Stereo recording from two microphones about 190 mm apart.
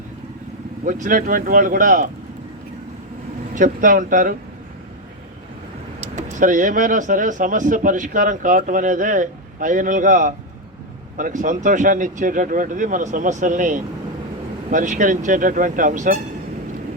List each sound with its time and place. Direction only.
0.9 s speech: 45° right (ahead or behind)
3.5 s speech: 45° right (ahead or behind)
6.0 s speech: 40° right (ahead or behind)